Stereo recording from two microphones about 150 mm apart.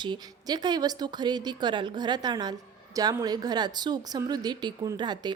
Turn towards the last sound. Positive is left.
turn(degrees=-30)  # may be behind; listen again after turning